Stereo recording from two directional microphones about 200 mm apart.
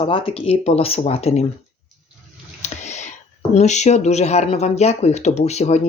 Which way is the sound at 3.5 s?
35° left (ahead or behind).